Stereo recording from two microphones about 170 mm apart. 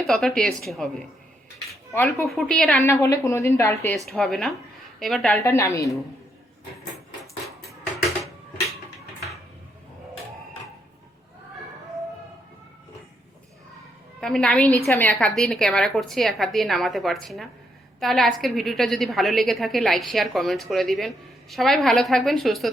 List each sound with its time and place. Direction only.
0.1 s a woman's voice: centre (ahead or behind)
1.9 s a woman's voice: 10° left (ahead or behind)
2.2 s a woman's voice: centre (ahead or behind)
2.8 s a woman's voice: 20° left (ahead or behind)
3.9 s a woman's voice: centre (ahead or behind)
5.4 s a woman's voice: 15° left (ahead or behind)
14.2 s a woman's voice: 5° left (ahead or behind)